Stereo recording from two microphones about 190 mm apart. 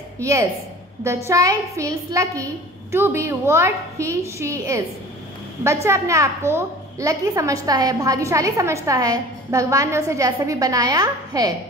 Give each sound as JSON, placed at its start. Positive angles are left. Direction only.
{"t": 0.2, "sound": "a woman's voice", "side_deg": -15}